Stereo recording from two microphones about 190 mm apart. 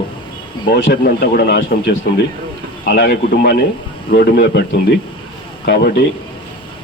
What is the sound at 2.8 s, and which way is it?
Speech, 60° left (ahead or behind).